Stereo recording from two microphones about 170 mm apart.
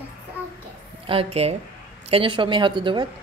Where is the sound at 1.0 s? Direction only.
35° right (ahead or behind).